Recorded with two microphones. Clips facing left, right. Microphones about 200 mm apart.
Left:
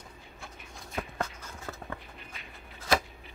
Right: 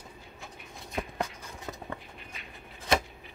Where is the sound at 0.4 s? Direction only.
15° right (ahead or behind).